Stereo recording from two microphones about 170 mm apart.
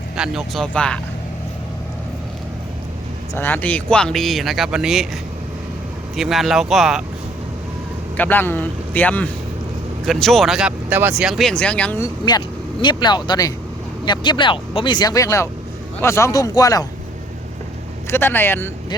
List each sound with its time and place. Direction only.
0.2 s speech: centre (ahead or behind)
3.3 s speech: 10° left (ahead or behind)
6.1 s speech: centre (ahead or behind)
8.1 s a man's voice: 10° left (ahead or behind)
18.1 s a man's voice: 15° left (ahead or behind)